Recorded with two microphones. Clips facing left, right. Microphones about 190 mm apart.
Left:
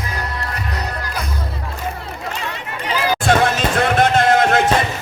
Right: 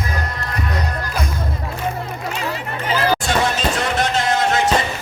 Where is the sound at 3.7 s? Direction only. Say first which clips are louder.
Left 5 dB; 55° left (ahead or behind).